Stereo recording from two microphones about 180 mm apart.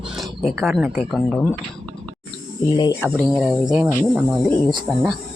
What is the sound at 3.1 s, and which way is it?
Speech, 5° right (ahead or behind).